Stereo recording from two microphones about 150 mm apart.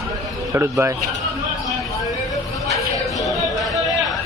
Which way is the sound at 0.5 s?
20° right (ahead or behind).